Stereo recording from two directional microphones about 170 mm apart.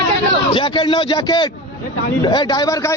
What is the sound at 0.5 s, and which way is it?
A man's voice, 30° left (ahead or behind).